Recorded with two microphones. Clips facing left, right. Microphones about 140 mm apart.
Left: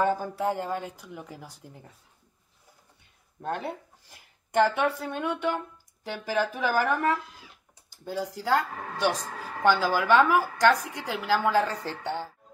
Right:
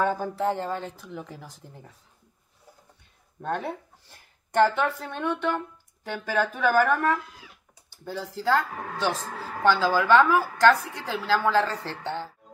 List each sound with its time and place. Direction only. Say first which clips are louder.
0.0 s a woman's voice: right 1 dB; 10° left (ahead or behind)
3.4 s a woman's voice: right 2 dB; 5° left (ahead or behind)